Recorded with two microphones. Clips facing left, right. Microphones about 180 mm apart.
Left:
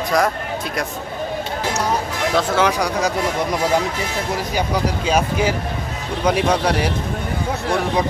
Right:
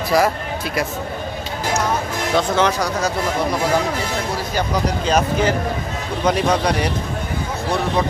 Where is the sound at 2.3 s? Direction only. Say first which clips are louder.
Right 1 dB; 5° left (ahead or behind).